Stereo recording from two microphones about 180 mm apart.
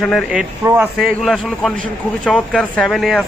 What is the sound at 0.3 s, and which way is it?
Speech, 10° right (ahead or behind).